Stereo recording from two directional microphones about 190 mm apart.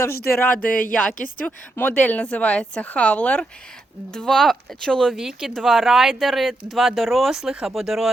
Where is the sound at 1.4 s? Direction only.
10° left (ahead or behind).